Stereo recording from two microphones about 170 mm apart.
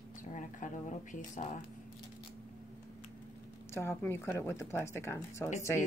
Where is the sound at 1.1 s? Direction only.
50° left (ahead or behind).